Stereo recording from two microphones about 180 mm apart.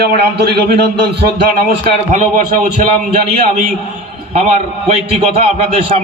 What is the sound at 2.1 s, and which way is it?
Speech, 45° right (ahead or behind).